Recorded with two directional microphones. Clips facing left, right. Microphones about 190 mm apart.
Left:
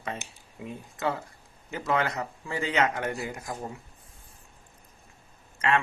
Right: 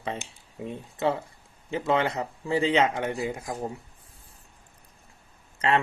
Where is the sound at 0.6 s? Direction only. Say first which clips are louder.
Right 4 dB; 30° right (ahead or behind).